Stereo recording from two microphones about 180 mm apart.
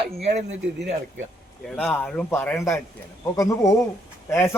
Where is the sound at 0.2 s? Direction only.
35° right (ahead or behind).